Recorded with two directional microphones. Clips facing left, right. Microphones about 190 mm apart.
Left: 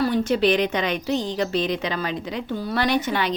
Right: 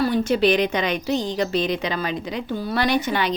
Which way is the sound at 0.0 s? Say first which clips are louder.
Right 1 dB; 10° right (ahead or behind).